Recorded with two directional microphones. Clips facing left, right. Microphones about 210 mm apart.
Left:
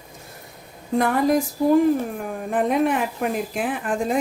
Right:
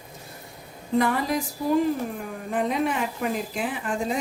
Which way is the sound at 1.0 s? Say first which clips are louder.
Left 5 dB; 50° left (ahead or behind).